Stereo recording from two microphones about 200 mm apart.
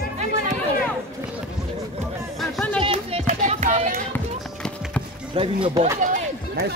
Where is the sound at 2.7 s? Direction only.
25° right (ahead or behind).